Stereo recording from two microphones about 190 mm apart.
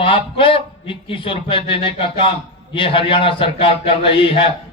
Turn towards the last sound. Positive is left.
turn(degrees=30)  # may be behind; listen again after turning